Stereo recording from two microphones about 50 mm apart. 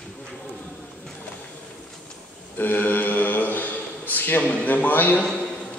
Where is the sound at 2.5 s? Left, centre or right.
Left.